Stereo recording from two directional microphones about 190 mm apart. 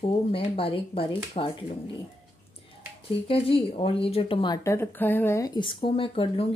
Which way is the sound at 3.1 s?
30° left (ahead or behind).